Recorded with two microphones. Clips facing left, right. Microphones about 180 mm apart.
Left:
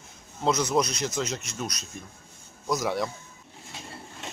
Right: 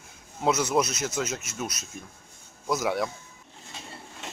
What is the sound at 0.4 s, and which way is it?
Speech, 10° right (ahead or behind).